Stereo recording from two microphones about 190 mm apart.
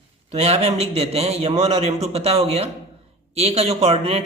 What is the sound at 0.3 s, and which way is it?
A man's voice, 35° right (ahead or behind).